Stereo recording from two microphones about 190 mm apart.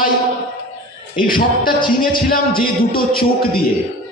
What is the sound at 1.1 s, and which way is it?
Speech, 50° left (ahead or behind).